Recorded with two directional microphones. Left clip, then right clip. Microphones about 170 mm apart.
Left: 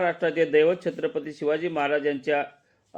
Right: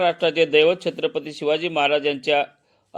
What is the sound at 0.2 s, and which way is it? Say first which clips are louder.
Speech: right 4 dB; 10° left (ahead or behind).